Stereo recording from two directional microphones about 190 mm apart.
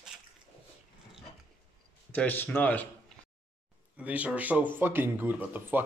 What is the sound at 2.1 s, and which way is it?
Speech, 10° left (ahead or behind).